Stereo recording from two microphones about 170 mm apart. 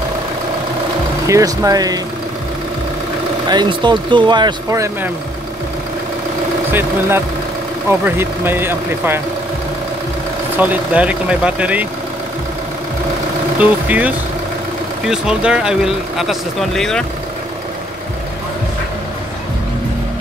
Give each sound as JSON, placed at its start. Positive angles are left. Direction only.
{"t": 1.2, "sound": "speech", "side_deg": -20}
{"t": 3.4, "sound": "speech", "side_deg": -25}
{"t": 6.7, "sound": "speech", "side_deg": -15}
{"t": 10.6, "sound": "speech", "side_deg": -10}
{"t": 13.6, "sound": "speech", "side_deg": -10}